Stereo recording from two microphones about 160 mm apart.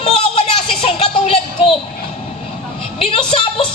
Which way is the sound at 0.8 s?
40° left (ahead or behind).